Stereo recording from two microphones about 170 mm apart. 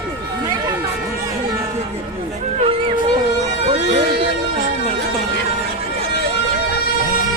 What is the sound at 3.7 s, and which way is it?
Music, 30° right (ahead or behind).